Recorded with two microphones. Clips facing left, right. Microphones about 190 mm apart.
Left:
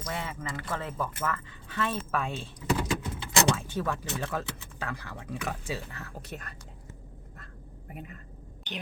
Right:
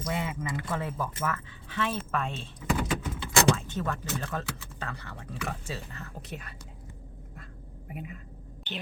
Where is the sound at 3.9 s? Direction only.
5° left (ahead or behind).